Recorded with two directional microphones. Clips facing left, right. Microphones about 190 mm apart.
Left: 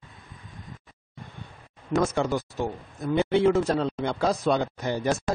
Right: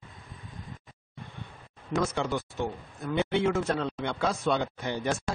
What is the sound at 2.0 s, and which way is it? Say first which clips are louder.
Speech: left 4 dB; 45° left (ahead or behind).